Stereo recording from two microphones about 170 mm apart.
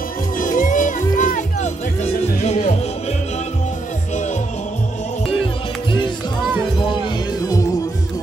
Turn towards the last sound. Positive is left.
turn(degrees=20)  # may be behind; listen again after turning